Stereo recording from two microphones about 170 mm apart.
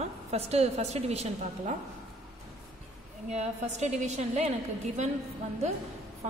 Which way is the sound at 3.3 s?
40° right (ahead or behind).